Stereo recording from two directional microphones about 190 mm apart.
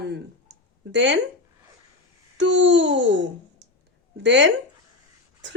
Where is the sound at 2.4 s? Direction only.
75° right (ahead or behind).